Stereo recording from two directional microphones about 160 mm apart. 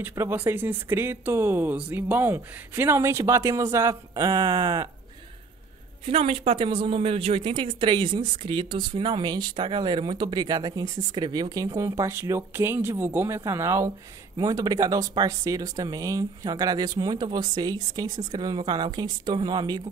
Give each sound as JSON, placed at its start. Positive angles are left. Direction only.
{"t": 0.0, "sound": "speech", "side_deg": -15}
{"t": 6.0, "sound": "speech", "side_deg": -35}